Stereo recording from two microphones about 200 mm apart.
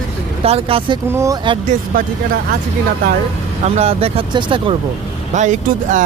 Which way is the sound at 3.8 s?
30° right (ahead or behind).